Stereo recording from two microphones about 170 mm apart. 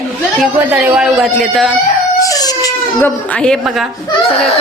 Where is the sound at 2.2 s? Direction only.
20° left (ahead or behind).